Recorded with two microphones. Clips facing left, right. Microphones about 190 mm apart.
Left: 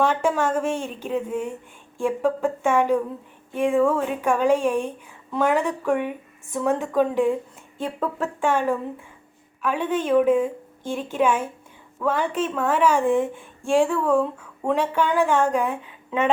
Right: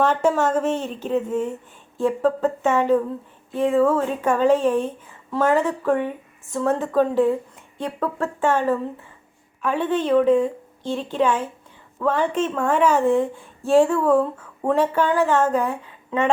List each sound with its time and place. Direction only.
0.0 s speech: 10° left (ahead or behind)
14.6 s speech: 5° right (ahead or behind)
15.0 s speech: 15° left (ahead or behind)
15.6 s speech: centre (ahead or behind)